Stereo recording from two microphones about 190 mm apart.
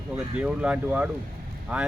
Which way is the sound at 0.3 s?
5° right (ahead or behind).